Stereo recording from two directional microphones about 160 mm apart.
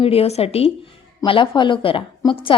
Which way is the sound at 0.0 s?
40° left (ahead or behind).